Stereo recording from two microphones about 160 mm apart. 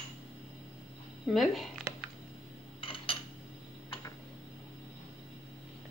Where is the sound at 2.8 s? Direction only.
35° left (ahead or behind).